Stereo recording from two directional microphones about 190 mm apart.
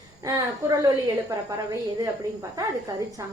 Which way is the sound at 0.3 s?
20° right (ahead or behind).